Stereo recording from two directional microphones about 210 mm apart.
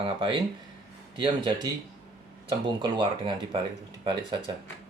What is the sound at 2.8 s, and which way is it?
Speech, 20° right (ahead or behind).